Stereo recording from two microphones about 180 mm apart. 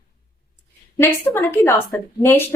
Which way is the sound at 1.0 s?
10° left (ahead or behind).